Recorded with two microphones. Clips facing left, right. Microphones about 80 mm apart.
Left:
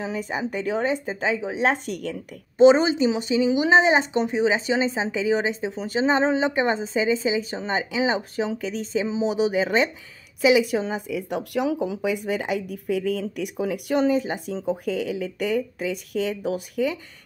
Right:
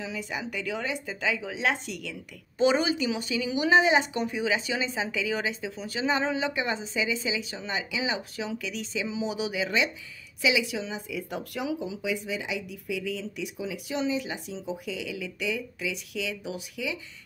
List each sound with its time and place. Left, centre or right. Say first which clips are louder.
0.0 s speech: left 6 dB; left
2.6 s speech: left 9 dB; left
11.0 s speech: left 6 dB; left